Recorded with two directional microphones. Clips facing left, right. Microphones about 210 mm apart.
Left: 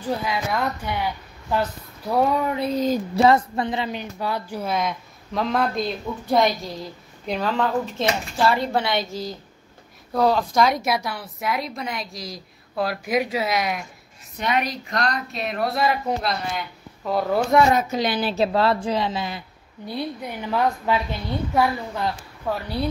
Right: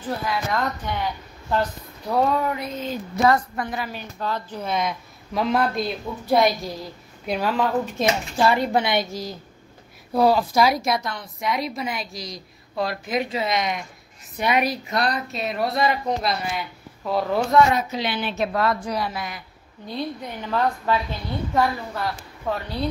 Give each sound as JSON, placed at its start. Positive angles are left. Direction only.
{"t": 0.0, "sound": "speech", "side_deg": 10}
{"t": 2.5, "sound": "a woman's voice", "side_deg": 35}
{"t": 3.3, "sound": "speech", "side_deg": 25}
{"t": 7.2, "sound": "speech", "side_deg": -5}
{"t": 10.8, "sound": "a woman's voice", "side_deg": 5}
{"t": 14.4, "sound": "a woman's voice", "side_deg": -10}
{"t": 17.7, "sound": "a woman's voice", "side_deg": 45}
{"t": 19.9, "sound": "speech", "side_deg": 10}
{"t": 22.4, "sound": "a woman's voice", "side_deg": 5}